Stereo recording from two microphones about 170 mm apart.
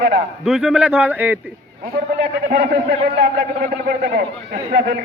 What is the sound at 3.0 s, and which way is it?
Speech, 90° right.